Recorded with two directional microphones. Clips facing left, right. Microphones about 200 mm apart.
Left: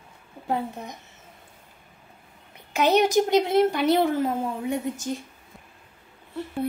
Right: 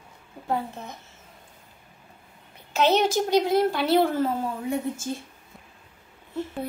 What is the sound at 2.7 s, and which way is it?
Speech, 15° left (ahead or behind).